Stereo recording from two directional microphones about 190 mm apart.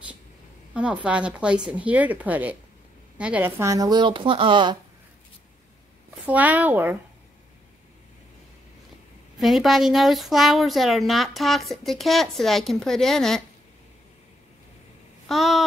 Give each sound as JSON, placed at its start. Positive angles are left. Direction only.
{"t": 0.7, "sound": "speech", "side_deg": -5}
{"t": 6.2, "sound": "speech", "side_deg": -10}
{"t": 9.4, "sound": "a woman's voice", "side_deg": 0}
{"t": 15.2, "sound": "a woman's voice", "side_deg": 0}